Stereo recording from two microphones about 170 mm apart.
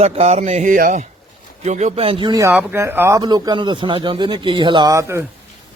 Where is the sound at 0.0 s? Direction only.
40° right (ahead or behind).